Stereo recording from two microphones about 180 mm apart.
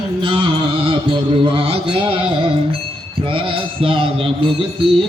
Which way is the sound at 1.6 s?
30° right (ahead or behind).